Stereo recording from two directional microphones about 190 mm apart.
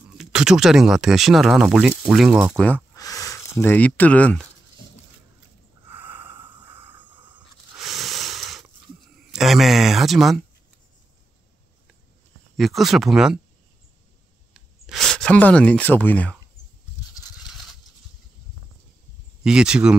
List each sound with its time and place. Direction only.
0.2 s speech: 5° right (ahead or behind)
2.5 s speech: 10° left (ahead or behind)
3.0 s speech: 20° left (ahead or behind)
5.9 s snort: 10° right (ahead or behind)
6.6 s a sound: 10° right (ahead or behind)
9.3 s speech: centre (ahead or behind)
12.5 s speech: centre (ahead or behind)
14.5 s a sound: centre (ahead or behind)
19.4 s speech: 5° right (ahead or behind)